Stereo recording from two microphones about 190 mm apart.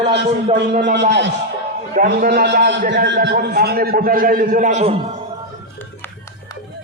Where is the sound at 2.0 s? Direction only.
50° right (ahead or behind); by 5.1 s 35° right (ahead or behind).